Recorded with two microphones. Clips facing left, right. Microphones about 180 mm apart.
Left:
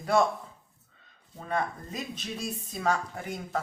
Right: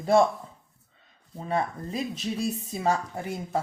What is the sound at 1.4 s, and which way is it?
Speech, 30° right (ahead or behind).